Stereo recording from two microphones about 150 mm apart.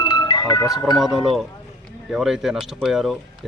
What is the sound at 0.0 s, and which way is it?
Music, 30° left (ahead or behind).